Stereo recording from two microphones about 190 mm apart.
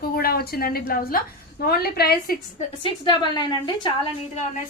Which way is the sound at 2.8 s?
25° left (ahead or behind).